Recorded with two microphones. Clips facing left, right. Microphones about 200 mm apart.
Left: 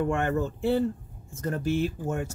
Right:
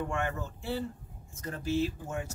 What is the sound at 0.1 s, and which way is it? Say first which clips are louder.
Speech: left 8 dB; 60° left (ahead or behind).